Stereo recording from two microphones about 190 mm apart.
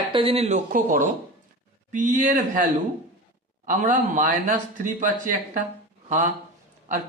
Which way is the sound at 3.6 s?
45° right (ahead or behind).